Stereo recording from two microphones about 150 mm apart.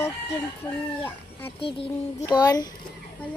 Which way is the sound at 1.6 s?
35° left (ahead or behind).